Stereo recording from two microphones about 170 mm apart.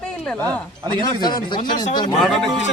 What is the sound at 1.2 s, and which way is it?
Speech, 25° left (ahead or behind).